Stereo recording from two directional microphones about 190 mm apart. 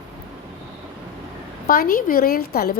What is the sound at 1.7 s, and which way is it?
A woman's voice, 50° left (ahead or behind).